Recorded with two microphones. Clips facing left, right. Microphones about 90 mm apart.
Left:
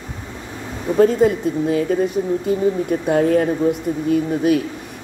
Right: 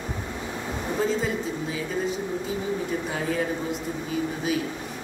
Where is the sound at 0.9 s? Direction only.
60° left (ahead or behind).